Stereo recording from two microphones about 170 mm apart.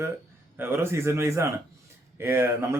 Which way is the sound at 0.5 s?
10° right (ahead or behind).